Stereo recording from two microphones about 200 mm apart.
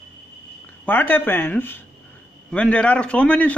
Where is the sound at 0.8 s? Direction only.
10° left (ahead or behind).